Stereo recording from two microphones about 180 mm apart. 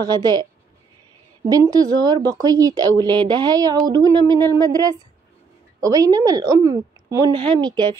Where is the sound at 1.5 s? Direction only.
20° right (ahead or behind).